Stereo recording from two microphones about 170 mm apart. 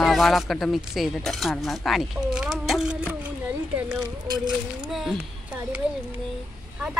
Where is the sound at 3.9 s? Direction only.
20° right (ahead or behind).